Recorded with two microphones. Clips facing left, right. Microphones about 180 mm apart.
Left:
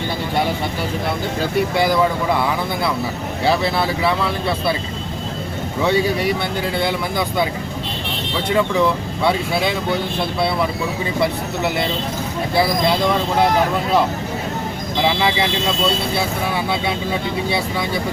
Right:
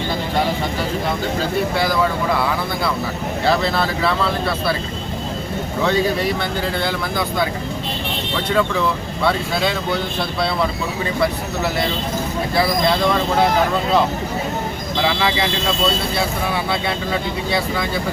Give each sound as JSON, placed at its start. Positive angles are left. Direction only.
{"t": 3.4, "sound": "speech", "side_deg": 15}
{"t": 5.8, "sound": "speech", "side_deg": 10}
{"t": 8.4, "sound": "speech", "side_deg": 15}
{"t": 14.9, "sound": "speech", "side_deg": 15}